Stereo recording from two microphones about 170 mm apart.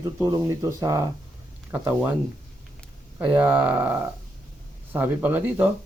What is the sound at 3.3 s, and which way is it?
Speech, 10° right (ahead or behind).